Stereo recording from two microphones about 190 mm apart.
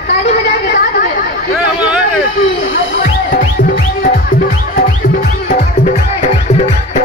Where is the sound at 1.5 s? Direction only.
Centre (ahead or behind).